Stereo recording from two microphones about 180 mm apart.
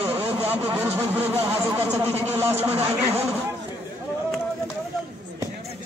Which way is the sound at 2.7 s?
35° right (ahead or behind).